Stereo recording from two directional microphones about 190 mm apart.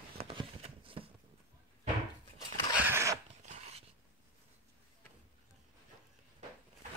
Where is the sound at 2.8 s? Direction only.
15° right (ahead or behind).